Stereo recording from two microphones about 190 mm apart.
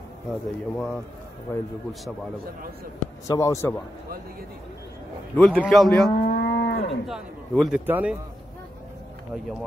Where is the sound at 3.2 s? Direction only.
15° left (ahead or behind).